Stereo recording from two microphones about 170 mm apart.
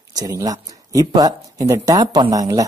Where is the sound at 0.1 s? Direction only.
20° right (ahead or behind).